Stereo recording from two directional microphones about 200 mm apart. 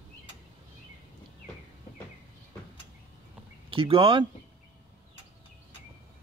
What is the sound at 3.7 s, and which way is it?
Speech, 25° right (ahead or behind).